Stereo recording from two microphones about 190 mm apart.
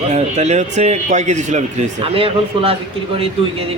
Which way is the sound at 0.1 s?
35° right (ahead or behind).